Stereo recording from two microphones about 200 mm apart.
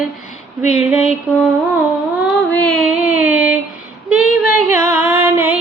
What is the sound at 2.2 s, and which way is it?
Music, centre (ahead or behind).